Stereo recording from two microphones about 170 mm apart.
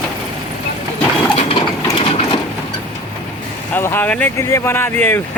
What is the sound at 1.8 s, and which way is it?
Sewing machine, 30° left (ahead or behind).